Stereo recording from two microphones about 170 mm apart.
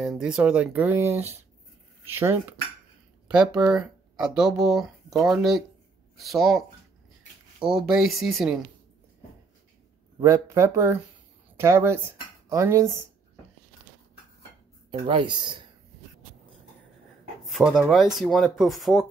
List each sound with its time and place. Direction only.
0.0 s speech: 5° right (ahead or behind)
10.2 s speech: 15° right (ahead or behind)
14.9 s speech: 30° right (ahead or behind)
17.5 s speech: centre (ahead or behind)